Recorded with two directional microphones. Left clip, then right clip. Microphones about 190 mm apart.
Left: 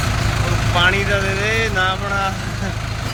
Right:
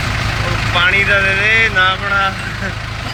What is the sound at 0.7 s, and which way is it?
Vehicle, 20° left (ahead or behind).